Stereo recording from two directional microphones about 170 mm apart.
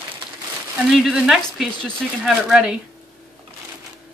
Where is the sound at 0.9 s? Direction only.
Centre (ahead or behind).